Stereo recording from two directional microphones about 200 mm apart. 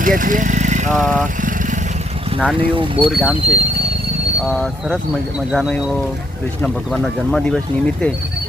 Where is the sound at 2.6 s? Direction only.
25° right (ahead or behind).